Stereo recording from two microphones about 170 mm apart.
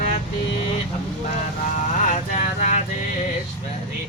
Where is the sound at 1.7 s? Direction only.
45° left (ahead or behind).